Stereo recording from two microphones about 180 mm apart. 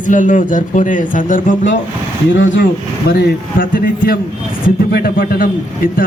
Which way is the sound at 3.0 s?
60° left (ahead or behind).